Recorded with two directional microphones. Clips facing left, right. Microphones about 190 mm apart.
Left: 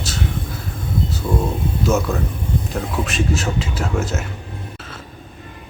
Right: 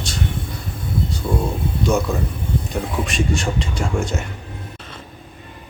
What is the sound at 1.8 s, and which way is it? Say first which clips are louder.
Speech: even; centre (ahead or behind).